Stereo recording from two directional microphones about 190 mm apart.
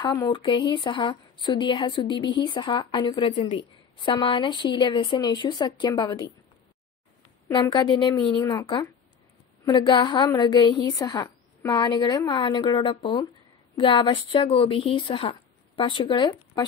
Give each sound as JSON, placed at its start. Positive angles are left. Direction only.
{"t": 0.0, "sound": "a woman's voice", "side_deg": 20}
{"t": 7.4, "sound": "a woman's voice", "side_deg": 20}